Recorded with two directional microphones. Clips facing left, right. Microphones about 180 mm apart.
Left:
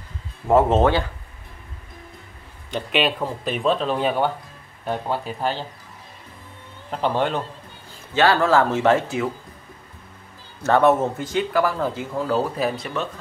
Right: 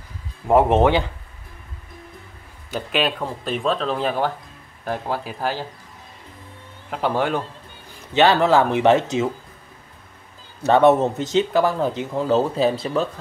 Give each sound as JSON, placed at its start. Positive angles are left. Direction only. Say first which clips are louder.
{"t": 0.5, "sound": "speech", "louder": "right 1 dB", "side_deg": -15}
{"t": 2.7, "sound": "speech", "louder": "even", "side_deg": 0}
{"t": 6.9, "sound": "speech", "louder": "right 1 dB", "side_deg": -10}
{"t": 10.6, "sound": "speech", "louder": "right 2 dB", "side_deg": -20}